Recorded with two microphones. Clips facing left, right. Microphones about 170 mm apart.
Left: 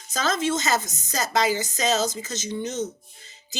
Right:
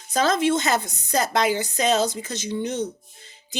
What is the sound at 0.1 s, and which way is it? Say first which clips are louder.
A woman's voice: right 4 dB; 60° right (ahead or behind).